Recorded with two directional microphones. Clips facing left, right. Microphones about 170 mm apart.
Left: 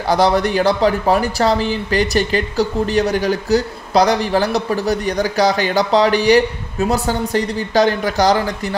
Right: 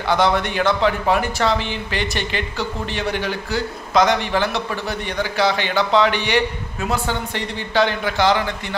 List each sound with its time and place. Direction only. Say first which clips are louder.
0.1 s speech: left 4 dB; 35° left (ahead or behind)